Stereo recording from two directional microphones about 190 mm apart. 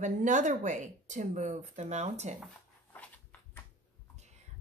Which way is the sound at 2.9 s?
10° left (ahead or behind).